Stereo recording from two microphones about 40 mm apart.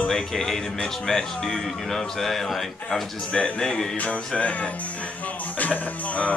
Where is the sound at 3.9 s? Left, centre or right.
Left.